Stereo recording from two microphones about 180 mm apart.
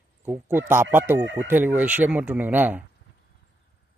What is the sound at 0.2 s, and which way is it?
Speech, 10° right (ahead or behind).